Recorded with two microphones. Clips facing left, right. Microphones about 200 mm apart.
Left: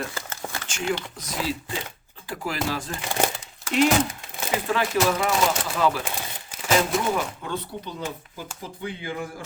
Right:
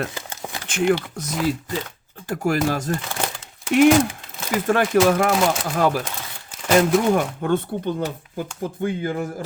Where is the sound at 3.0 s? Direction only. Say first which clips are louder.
Left 3 dB; 20° left (ahead or behind).